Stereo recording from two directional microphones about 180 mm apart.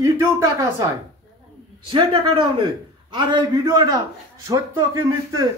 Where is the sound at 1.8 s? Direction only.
30° right (ahead or behind).